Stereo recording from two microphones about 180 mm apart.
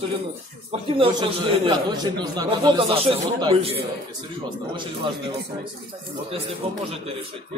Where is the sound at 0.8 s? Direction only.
30° right (ahead or behind).